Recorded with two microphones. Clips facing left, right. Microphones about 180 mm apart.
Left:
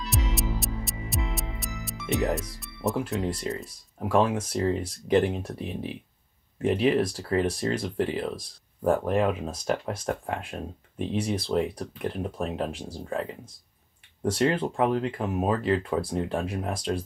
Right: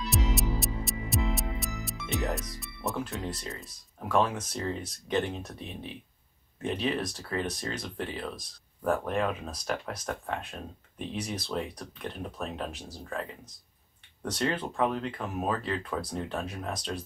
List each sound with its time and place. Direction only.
0.0 s music: centre (ahead or behind)
3.3 s speech: 30° left (ahead or behind)
6.6 s speech: 30° left (ahead or behind)